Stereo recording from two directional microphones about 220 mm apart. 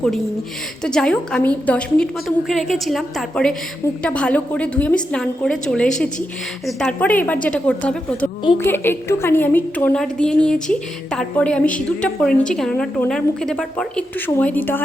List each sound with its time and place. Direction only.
0.9 s a woman's voice: 5° left (ahead or behind)